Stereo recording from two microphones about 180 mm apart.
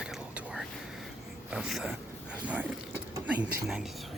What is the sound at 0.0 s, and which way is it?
Whispering, 5° right (ahead or behind).